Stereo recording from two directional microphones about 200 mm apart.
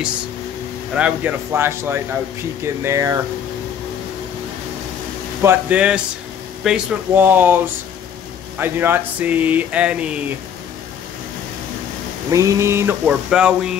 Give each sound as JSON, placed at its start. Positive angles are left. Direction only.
{"t": 0.9, "sound": "speech", "side_deg": -5}
{"t": 5.4, "sound": "speech", "side_deg": -10}
{"t": 12.3, "sound": "speech", "side_deg": -15}